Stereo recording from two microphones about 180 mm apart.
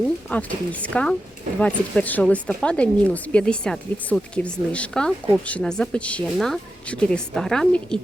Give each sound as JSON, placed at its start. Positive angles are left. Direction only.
{"t": 0.3, "sound": "speech", "side_deg": 5}